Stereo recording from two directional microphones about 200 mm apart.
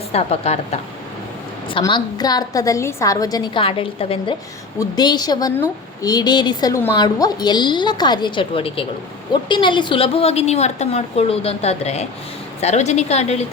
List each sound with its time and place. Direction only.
0.1 s a woman's voice: 30° left (ahead or behind)
1.7 s a woman's voice: 20° left (ahead or behind)